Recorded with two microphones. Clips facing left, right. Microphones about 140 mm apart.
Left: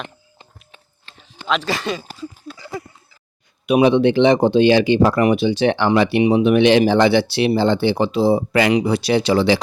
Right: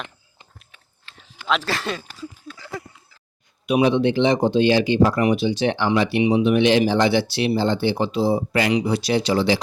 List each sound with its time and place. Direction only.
0.3 s a sound: 25° left (ahead or behind)
1.5 s speech: centre (ahead or behind)
3.7 s speech: 65° left (ahead or behind); by 8.7 s 80° left
8.7 s speech: 65° left (ahead or behind)